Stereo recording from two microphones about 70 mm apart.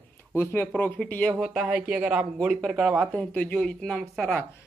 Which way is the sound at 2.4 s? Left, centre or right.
Centre.